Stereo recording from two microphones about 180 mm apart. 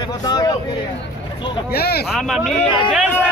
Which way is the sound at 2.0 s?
Centre (ahead or behind).